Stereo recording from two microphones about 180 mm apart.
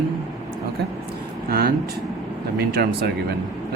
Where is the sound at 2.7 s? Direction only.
60° right (ahead or behind).